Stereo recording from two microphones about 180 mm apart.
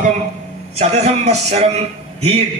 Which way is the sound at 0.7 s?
35° right (ahead or behind).